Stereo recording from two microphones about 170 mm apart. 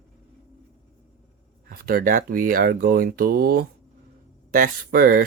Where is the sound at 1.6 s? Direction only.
60° right (ahead or behind).